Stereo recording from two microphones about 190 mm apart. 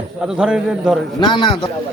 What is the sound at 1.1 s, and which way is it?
Speech, 25° left (ahead or behind).